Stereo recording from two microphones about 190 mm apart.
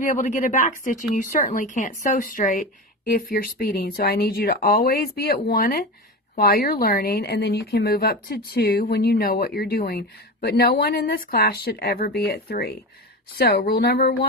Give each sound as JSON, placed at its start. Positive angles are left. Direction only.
{"t": 0.0, "sound": "a woman's voice", "side_deg": 40}